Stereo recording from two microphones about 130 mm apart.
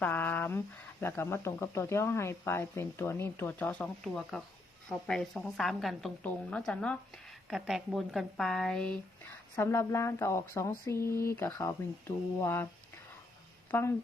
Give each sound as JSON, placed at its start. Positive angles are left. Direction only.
{"t": 0.0, "sound": "a sound", "side_deg": 15}
{"t": 1.0, "sound": "speech", "side_deg": 20}
{"t": 9.6, "sound": "speech", "side_deg": 20}
{"t": 13.7, "sound": "speech", "side_deg": 15}